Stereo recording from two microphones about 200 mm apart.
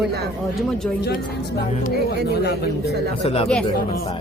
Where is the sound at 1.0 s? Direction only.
50° left (ahead or behind).